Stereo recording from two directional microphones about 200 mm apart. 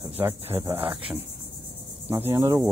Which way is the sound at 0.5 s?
10° right (ahead or behind).